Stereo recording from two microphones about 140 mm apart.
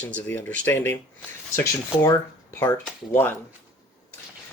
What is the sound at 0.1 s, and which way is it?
Speech, 10° left (ahead or behind).